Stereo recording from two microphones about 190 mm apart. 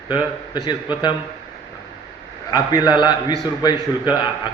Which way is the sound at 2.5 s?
20° left (ahead or behind).